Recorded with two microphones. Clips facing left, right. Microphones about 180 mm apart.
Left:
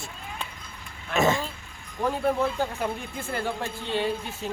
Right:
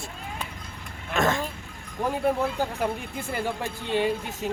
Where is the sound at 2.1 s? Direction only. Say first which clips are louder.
Right 1 dB; 10° right (ahead or behind).